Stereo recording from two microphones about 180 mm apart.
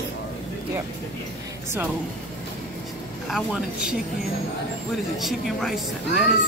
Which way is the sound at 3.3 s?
5° right (ahead or behind).